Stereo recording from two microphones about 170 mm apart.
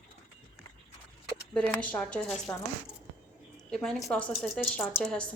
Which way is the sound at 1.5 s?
10° left (ahead or behind).